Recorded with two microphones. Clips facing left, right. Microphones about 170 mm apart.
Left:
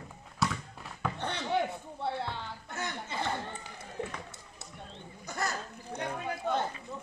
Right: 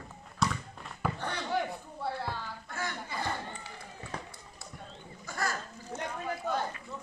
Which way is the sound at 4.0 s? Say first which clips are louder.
Left 14 dB; 75° left (ahead or behind).